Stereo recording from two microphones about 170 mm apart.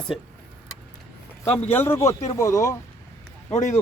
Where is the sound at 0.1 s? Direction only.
5° right (ahead or behind).